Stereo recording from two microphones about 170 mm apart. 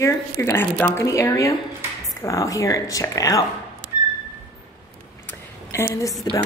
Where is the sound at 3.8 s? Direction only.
65° right (ahead or behind).